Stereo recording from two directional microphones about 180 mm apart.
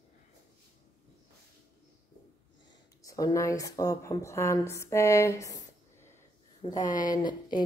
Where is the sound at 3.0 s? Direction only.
20° left (ahead or behind).